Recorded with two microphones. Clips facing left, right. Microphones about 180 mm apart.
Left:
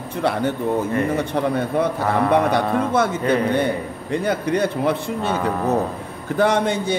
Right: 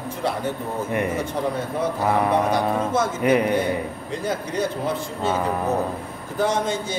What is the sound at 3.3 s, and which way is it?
Speech, 15° right (ahead or behind).